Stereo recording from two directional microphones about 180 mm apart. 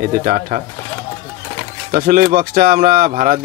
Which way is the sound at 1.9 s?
55° right (ahead or behind).